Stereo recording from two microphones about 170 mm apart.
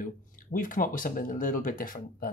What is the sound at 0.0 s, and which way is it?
Speech, 50° left (ahead or behind).